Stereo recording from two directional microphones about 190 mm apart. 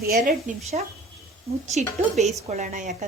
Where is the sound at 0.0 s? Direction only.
55° right (ahead or behind).